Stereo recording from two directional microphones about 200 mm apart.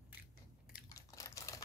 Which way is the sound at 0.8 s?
15° left (ahead or behind).